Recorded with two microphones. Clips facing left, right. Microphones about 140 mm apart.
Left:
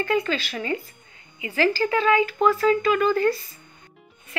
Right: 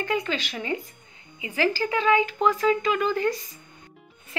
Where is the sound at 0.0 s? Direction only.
15° right (ahead or behind).